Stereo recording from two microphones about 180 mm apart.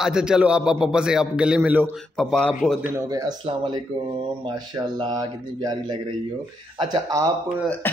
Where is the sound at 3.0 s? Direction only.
20° right (ahead or behind).